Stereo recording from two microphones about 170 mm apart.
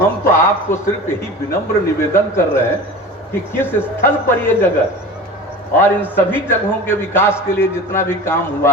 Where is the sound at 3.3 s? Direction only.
10° left (ahead or behind).